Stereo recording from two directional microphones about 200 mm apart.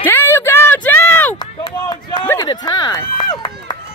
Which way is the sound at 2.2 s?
20° left (ahead or behind).